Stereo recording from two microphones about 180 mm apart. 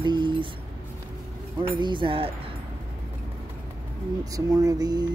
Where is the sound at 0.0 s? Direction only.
25° right (ahead or behind).